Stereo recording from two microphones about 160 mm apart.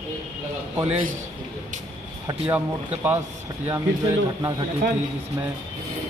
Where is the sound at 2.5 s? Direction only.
10° right (ahead or behind).